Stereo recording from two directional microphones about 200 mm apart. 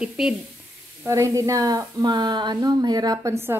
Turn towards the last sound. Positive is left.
turn(degrees=-15)  # may be behind; listen again after turning